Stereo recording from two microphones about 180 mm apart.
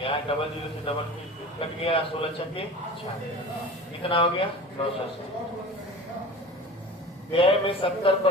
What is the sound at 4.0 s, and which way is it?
Speech, 30° left (ahead or behind).